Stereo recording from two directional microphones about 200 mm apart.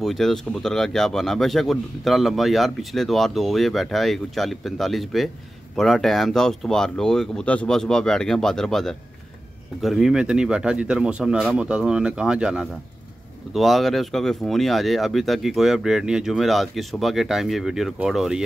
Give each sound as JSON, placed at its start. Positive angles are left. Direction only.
{"t": 0.0, "sound": "speech", "side_deg": 0}